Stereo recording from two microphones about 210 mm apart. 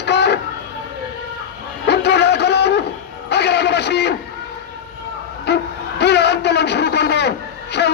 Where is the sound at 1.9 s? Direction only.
55° left (ahead or behind).